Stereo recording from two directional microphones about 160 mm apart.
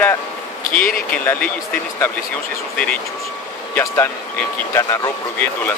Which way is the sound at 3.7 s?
15° left (ahead or behind).